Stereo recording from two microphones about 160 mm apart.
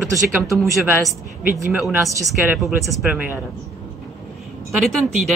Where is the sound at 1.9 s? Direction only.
20° right (ahead or behind).